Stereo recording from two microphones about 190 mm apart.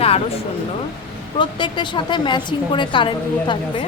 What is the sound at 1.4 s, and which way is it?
A woman's voice, 25° left (ahead or behind).